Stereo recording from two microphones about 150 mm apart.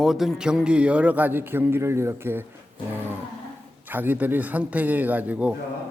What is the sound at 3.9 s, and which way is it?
A man's voice, 10° right (ahead or behind).